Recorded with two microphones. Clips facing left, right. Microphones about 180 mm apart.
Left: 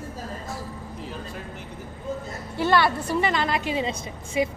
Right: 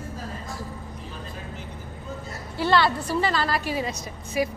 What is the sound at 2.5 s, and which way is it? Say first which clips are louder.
A woman's voice: even; 20° left (ahead or behind).